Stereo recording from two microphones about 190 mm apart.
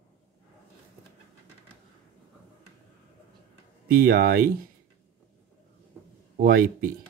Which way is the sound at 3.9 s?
55° right (ahead or behind).